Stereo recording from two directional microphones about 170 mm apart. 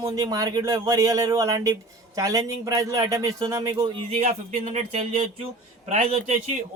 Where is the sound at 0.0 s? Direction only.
20° right (ahead or behind).